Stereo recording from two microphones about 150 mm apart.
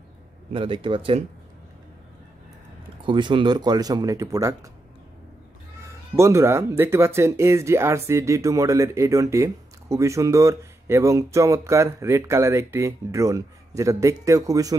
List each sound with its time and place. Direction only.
0.5 s speech: 35° right (ahead or behind)
3.0 s speech: 30° right (ahead or behind)
6.1 s speech: 20° right (ahead or behind)